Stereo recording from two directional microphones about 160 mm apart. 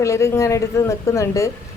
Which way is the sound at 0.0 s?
15° left (ahead or behind).